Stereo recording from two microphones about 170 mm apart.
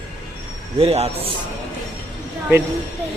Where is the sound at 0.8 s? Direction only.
35° right (ahead or behind).